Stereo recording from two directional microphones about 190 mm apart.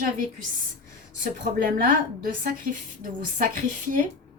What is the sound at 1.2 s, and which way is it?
Speech, 45° right (ahead or behind).